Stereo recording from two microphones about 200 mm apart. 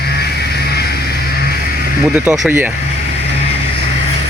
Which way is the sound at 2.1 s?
5° right (ahead or behind).